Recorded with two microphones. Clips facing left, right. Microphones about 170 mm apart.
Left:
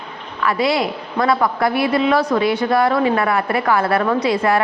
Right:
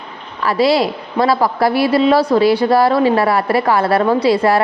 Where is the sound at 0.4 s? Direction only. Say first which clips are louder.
Right 4 dB; 35° right (ahead or behind).